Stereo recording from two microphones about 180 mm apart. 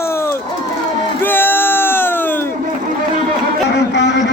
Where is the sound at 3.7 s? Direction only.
75° left (ahead or behind).